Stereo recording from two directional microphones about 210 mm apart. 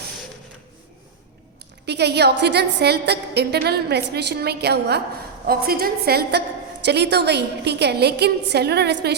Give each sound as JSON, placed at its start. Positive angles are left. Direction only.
{"t": 1.9, "sound": "a woman's voice", "side_deg": -50}